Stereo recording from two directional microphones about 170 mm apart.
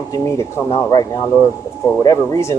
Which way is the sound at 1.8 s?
20° left (ahead or behind).